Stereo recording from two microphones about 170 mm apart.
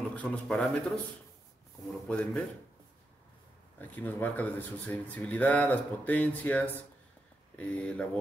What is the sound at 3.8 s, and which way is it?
Speech, 10° left (ahead or behind).